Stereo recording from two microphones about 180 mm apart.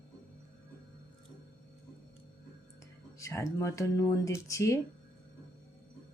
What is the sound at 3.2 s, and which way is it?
Speech, 15° left (ahead or behind).